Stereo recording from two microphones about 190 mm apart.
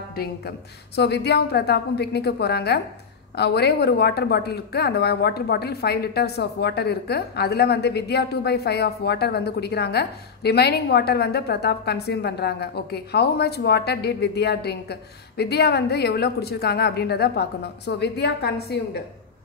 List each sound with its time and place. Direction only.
0.1 s a woman's voice: 55° left (ahead or behind)